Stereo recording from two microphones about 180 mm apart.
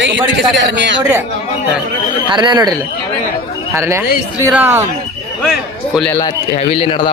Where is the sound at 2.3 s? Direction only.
25° right (ahead or behind).